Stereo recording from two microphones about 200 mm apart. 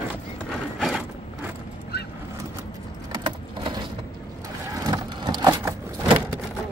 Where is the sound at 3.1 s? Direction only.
25° right (ahead or behind).